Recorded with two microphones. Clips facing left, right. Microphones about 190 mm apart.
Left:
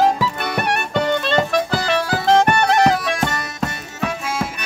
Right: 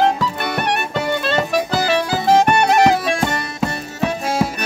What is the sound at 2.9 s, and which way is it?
Music, 25° right (ahead or behind).